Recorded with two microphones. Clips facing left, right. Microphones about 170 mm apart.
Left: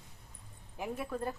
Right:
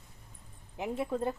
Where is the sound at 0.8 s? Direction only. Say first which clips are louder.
Right 4 dB; 25° right (ahead or behind).